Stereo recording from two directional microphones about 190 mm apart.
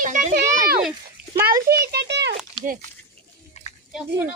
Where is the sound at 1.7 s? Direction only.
55° right (ahead or behind).